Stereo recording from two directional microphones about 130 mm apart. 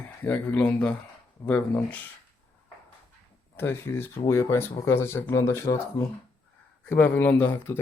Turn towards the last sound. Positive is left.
turn(degrees=15)  # may be behind; listen again after turning